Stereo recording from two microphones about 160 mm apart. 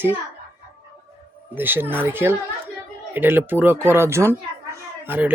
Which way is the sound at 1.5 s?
10° right (ahead or behind).